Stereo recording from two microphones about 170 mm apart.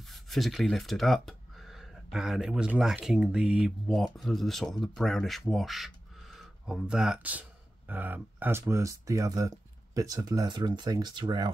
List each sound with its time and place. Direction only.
0.1 s speech: centre (ahead or behind); by 11.5 s 25° right (ahead or behind)